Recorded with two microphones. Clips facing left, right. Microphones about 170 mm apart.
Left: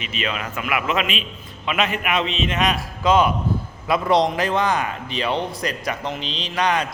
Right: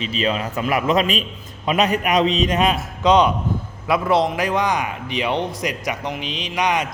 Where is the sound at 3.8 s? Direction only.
10° right (ahead or behind).